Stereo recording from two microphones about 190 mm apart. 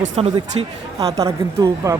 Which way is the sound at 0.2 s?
30° right (ahead or behind).